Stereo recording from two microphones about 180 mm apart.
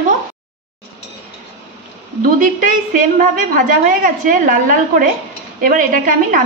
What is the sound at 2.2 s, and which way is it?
A woman's voice, 50° right (ahead or behind).